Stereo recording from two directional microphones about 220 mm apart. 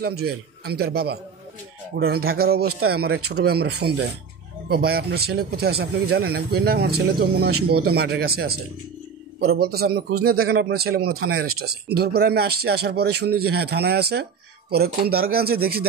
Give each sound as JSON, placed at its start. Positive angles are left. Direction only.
{"t": 0.0, "sound": "a man's voice", "side_deg": -45}